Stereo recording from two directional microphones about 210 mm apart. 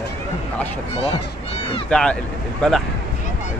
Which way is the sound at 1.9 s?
5° left (ahead or behind).